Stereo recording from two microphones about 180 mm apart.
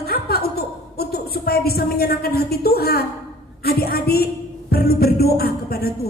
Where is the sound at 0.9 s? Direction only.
60° left (ahead or behind).